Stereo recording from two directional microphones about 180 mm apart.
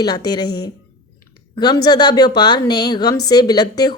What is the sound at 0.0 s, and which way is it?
A woman's voice, 25° left (ahead or behind).